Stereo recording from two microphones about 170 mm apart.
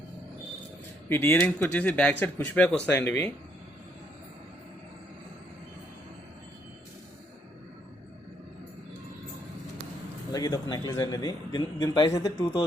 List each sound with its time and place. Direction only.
1.1 s speech: 15° left (ahead or behind)
10.3 s a man's voice: 25° left (ahead or behind)